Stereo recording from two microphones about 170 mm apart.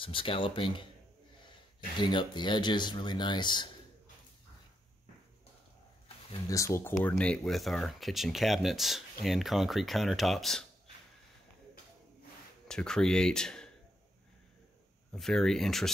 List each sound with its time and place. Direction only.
0.0 s speech: 30° left (ahead or behind)
2.0 s speech: 25° left (ahead or behind)
6.5 s speech: 15° left (ahead or behind); by 10.6 s centre (ahead or behind)
12.6 s speech: 5° left (ahead or behind)
15.1 s speech: centre (ahead or behind)